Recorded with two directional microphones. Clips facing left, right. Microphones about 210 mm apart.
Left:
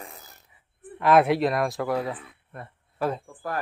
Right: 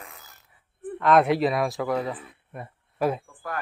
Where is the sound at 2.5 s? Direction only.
10° right (ahead or behind).